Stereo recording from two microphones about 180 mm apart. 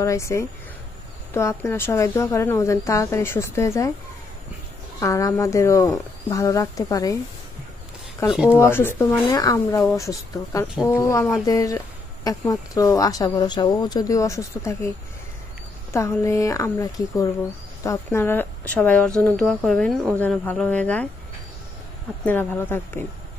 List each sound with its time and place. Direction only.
0.0 s a woman's voice: 15° left (ahead or behind)
5.0 s a woman's voice: 15° left (ahead or behind)
8.3 s speech: 5° right (ahead or behind)
8.5 s a woman's voice: 15° left (ahead or behind)
10.7 s speech: 5° right (ahead or behind)
11.0 s a woman's voice: 15° left (ahead or behind)
15.9 s a woman's voice: 15° left (ahead or behind)
22.2 s a woman's voice: 10° left (ahead or behind)